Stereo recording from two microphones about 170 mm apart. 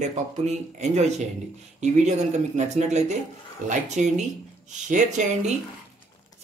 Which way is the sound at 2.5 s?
40° right (ahead or behind).